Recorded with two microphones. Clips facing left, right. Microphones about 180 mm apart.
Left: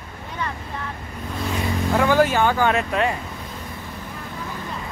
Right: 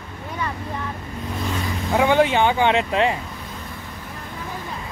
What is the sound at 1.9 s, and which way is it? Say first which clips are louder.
Speech: right 1 dB; 20° right (ahead or behind).